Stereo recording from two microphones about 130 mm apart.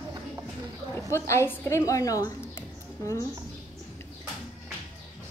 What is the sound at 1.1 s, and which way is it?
A woman's voice, 20° left (ahead or behind).